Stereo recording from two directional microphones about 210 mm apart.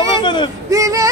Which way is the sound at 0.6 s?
15° right (ahead or behind).